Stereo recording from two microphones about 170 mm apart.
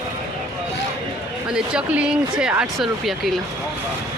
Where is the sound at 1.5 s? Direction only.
5° right (ahead or behind).